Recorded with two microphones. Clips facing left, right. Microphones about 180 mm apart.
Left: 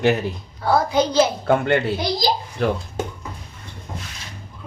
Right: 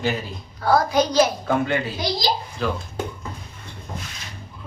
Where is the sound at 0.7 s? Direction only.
25° left (ahead or behind).